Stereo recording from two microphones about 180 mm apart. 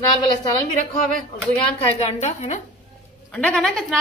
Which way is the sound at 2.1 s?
40° left (ahead or behind).